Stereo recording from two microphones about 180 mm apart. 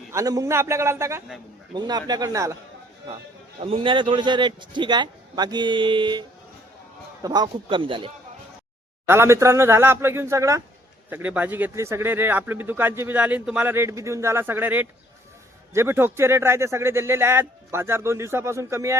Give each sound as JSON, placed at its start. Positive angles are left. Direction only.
{"t": 0.1, "sound": "a man's voice", "side_deg": -20}
{"t": 3.6, "sound": "a man's voice", "side_deg": -30}
{"t": 9.0, "sound": "a man's voice", "side_deg": -15}